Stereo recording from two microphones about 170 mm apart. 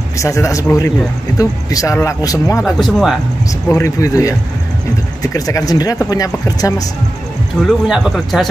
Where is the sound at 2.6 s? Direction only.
Centre (ahead or behind).